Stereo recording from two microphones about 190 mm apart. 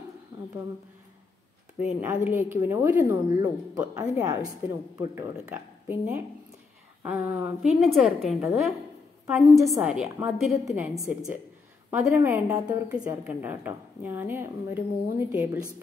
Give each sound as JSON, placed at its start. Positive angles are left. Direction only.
{"t": 0.3, "sound": "a sound", "side_deg": -20}
{"t": 1.8, "sound": "a woman's voice", "side_deg": -10}
{"t": 9.2, "sound": "a woman's voice", "side_deg": -15}
{"t": 9.8, "sound": "a woman's voice", "side_deg": -5}